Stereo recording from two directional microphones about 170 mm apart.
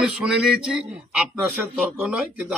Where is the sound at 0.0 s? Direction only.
5° right (ahead or behind).